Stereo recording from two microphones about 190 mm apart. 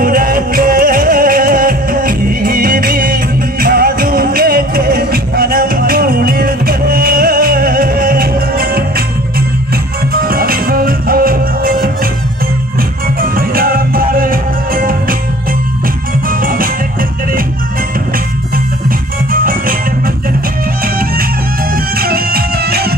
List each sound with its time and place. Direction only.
0.0 s music: 50° right (ahead or behind)
10.1 s music: 50° right (ahead or behind)
13.6 s music: 50° right (ahead or behind)
18.9 s music: 50° right (ahead or behind)
21.9 s music: 50° right (ahead or behind)